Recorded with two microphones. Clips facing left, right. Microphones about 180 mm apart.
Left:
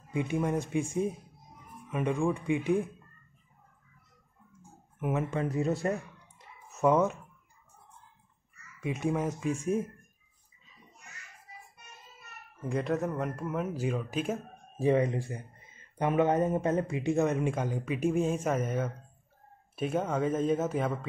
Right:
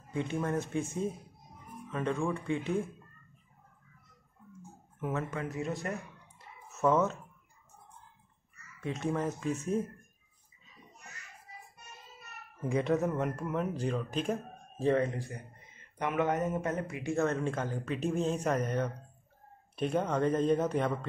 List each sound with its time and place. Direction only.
0.1 s speech: 15° left (ahead or behind)
4.9 s speech: 15° left (ahead or behind)
5.4 s speech: 35° left (ahead or behind)
6.8 s speech: 15° left (ahead or behind)
8.8 s speech: 10° left (ahead or behind)
12.6 s speech: centre (ahead or behind)